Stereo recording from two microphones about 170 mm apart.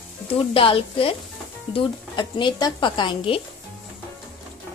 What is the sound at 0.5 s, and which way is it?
A woman's voice, 30° left (ahead or behind).